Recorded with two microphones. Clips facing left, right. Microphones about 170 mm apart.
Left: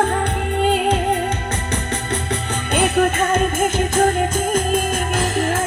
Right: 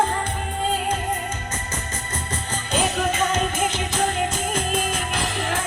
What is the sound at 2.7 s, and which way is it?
Music, 60° left (ahead or behind).